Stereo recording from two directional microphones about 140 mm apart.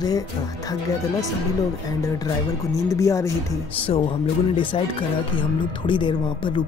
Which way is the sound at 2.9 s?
20° left (ahead or behind).